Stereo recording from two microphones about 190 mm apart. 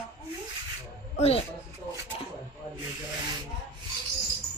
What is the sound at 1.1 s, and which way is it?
Speech, 35° left (ahead or behind).